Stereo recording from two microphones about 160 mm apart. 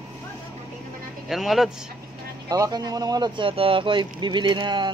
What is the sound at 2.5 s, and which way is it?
Speech, 25° right (ahead or behind).